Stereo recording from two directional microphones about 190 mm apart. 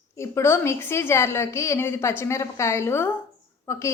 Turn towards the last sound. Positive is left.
turn(degrees=15)  # may be behind; listen again after turning